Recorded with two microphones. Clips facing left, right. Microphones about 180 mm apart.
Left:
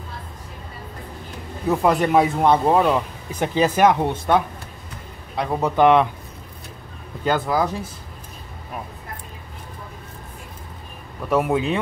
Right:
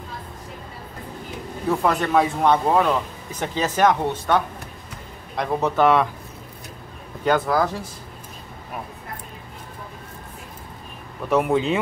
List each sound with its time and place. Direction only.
1.7 s a man's voice: 15° left (ahead or behind)
5.8 s speech: 20° left (ahead or behind)
7.2 s speech: centre (ahead or behind)
11.2 s speech: centre (ahead or behind)